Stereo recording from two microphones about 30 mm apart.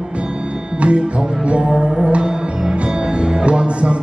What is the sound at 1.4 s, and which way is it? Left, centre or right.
Music, right.